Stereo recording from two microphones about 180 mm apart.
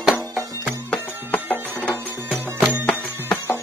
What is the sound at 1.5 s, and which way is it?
Music, 10° right (ahead or behind).